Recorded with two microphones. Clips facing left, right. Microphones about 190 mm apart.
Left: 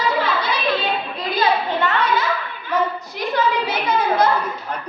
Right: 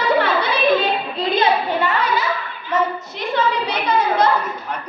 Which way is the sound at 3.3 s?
5° left (ahead or behind).